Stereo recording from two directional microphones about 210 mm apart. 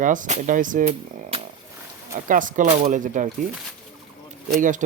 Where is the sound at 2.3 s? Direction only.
40° right (ahead or behind).